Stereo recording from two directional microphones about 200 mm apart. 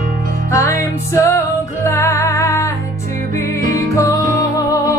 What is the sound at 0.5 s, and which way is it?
Music, 15° left (ahead or behind).